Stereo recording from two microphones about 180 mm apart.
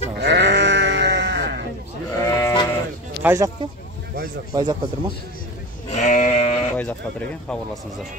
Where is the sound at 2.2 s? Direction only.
15° left (ahead or behind).